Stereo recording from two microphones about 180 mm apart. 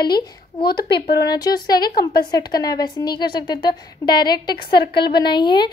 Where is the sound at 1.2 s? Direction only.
20° left (ahead or behind).